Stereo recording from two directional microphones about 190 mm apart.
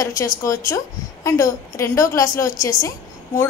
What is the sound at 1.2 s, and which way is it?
A woman's voice, 15° left (ahead or behind).